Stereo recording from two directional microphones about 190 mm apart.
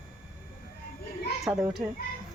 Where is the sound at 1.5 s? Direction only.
5° right (ahead or behind).